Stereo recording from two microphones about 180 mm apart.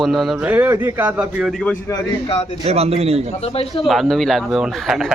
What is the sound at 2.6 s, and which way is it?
Speech, 35° right (ahead or behind).